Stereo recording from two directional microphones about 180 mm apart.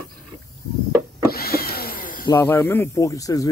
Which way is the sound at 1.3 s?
60° left (ahead or behind).